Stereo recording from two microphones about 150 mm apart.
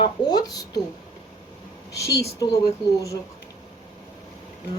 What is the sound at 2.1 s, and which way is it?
A woman's voice, 20° left (ahead or behind).